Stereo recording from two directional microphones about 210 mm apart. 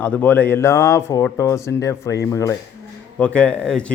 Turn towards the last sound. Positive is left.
turn(degrees=5)  # may be behind; listen again after turning